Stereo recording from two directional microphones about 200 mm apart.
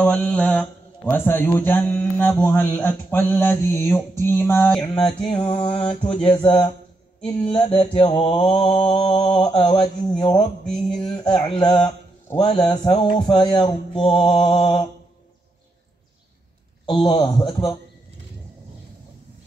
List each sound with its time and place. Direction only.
0.0 s mantra: 5° left (ahead or behind)
1.1 s speech: 10° left (ahead or behind)
5.3 s mantra: 25° left (ahead or behind)
10.6 s mantra: centre (ahead or behind)
11.1 s mantra: 20° left (ahead or behind)
16.8 s mantra: 25° left (ahead or behind)